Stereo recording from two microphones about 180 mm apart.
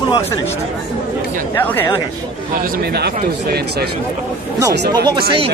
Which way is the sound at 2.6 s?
60° right (ahead or behind).